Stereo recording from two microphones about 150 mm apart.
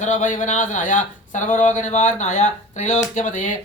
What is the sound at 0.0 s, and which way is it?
Speech, 55° left (ahead or behind).